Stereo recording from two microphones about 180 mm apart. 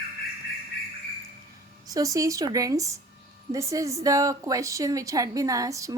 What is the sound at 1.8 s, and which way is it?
A woman's voice, 20° right (ahead or behind).